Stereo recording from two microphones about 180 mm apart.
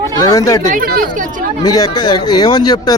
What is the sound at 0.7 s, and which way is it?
Speech, 50° right (ahead or behind).